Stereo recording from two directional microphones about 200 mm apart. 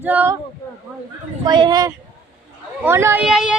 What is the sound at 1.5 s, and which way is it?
Speech, 20° right (ahead or behind).